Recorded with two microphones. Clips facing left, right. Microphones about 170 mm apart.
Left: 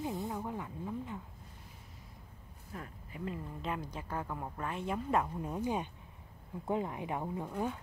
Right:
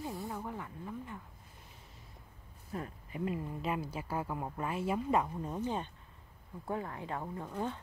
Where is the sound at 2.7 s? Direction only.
30° right (ahead or behind).